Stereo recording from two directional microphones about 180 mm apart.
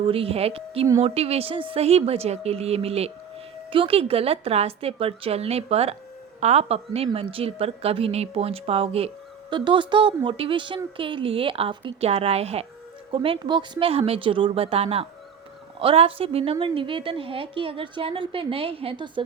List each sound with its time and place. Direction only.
0.0 s a woman's voice: 30° right (ahead or behind)